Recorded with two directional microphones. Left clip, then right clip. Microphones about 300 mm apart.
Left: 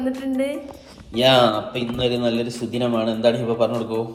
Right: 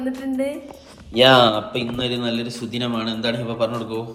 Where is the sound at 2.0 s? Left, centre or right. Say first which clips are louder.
Left 6 dB; centre.